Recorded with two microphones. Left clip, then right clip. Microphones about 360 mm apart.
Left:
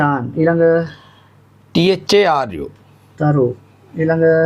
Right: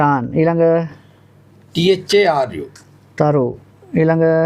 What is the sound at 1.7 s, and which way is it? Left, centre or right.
Speech, left.